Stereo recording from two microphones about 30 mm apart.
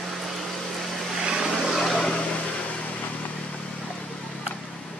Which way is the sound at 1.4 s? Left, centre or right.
Centre.